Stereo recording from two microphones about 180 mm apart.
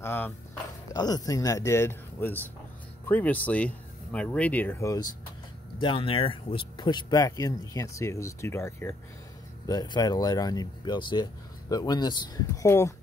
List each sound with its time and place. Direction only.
0.0 s a sound: 10° left (ahead or behind)
0.9 s speech: 20° left (ahead or behind)
5.8 s speech: 30° left (ahead or behind)